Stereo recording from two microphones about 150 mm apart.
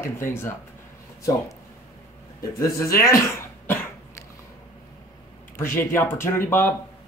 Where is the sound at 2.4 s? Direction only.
20° left (ahead or behind).